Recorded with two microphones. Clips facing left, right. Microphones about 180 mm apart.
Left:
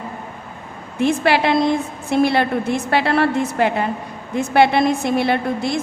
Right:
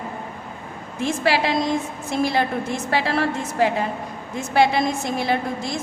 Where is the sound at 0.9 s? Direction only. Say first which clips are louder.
Left 4 dB; 60° left (ahead or behind).